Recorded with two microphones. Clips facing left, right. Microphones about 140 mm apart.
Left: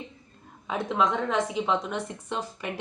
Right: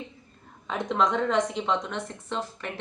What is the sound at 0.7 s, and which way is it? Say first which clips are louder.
A woman's voice: even; 5° left (ahead or behind).